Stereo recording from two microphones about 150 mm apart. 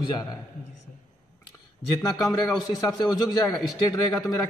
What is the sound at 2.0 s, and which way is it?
A man's voice, 25° left (ahead or behind).